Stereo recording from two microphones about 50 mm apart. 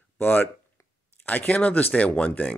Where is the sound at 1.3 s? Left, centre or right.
Left.